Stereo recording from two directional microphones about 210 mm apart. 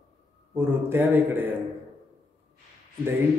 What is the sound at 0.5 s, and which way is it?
Speech, 10° right (ahead or behind).